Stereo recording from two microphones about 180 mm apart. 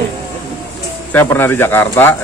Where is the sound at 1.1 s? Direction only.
10° left (ahead or behind).